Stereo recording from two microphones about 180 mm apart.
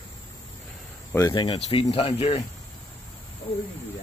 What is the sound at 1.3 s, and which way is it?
Speech, 30° left (ahead or behind).